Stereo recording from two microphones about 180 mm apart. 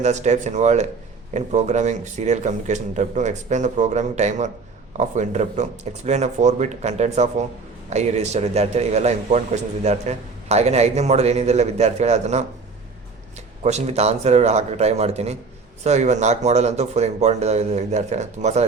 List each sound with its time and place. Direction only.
0.0 s a man's voice: 40° right (ahead or behind)
13.7 s a man's voice: 35° right (ahead or behind)